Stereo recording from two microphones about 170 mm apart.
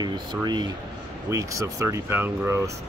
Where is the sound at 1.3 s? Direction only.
20° right (ahead or behind).